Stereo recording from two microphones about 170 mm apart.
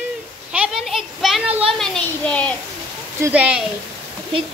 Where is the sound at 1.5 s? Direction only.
35° right (ahead or behind).